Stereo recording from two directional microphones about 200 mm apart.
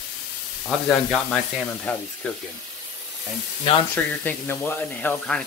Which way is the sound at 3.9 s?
10° left (ahead or behind).